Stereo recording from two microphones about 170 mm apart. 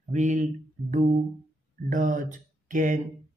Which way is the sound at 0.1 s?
45° right (ahead or behind).